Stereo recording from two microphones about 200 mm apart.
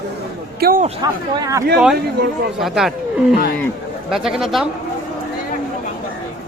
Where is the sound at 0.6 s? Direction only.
45° right (ahead or behind).